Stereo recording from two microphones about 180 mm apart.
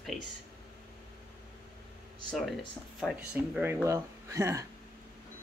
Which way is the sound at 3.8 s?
15° right (ahead or behind).